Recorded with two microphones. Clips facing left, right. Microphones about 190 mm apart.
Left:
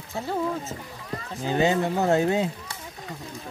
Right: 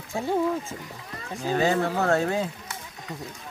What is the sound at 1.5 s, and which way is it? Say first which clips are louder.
Speech: left 1 dB; 20° left (ahead or behind).